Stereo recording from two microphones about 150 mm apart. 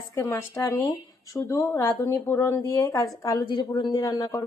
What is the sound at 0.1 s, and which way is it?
Speech, 15° left (ahead or behind).